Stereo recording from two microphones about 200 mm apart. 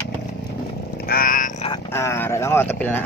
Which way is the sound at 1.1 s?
45° left (ahead or behind).